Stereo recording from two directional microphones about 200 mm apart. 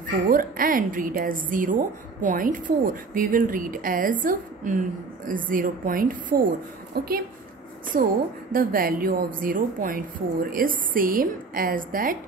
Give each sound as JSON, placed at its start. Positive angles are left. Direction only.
{"t": 0.3, "sound": "a woman's voice", "side_deg": -45}